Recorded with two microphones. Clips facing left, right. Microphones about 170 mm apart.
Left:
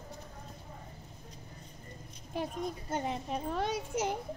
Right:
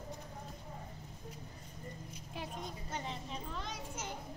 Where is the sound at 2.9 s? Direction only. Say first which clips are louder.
Left 8 dB; 55° left (ahead or behind).